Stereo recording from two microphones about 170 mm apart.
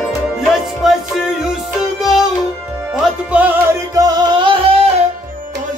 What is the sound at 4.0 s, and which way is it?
Music, 25° right (ahead or behind).